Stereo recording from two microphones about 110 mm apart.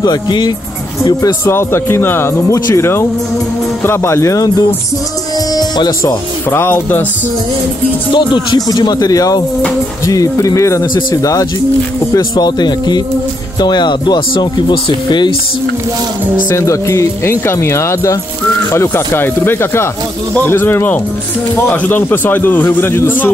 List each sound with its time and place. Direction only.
0.0 s speech: 45° left (ahead or behind)
1.4 s speech: 20° left (ahead or behind)
5.5 s music: 40° left (ahead or behind)
6.5 s speech: 20° left (ahead or behind)
8.1 s speech: 45° left (ahead or behind)
16.4 s speech: 25° left (ahead or behind)